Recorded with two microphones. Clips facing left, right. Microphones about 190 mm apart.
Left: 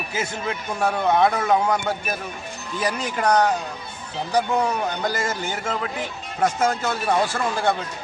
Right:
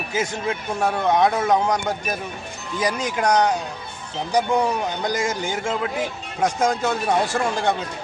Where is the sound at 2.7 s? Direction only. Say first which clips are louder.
Right 2 dB; 10° right (ahead or behind).